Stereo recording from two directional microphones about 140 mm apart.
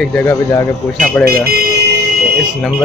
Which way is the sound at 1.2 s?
90° right.